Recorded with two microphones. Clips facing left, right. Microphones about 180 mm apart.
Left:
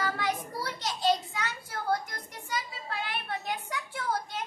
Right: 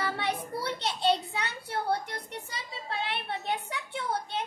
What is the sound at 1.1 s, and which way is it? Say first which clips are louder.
A child's voice: even; 30° right (ahead or behind).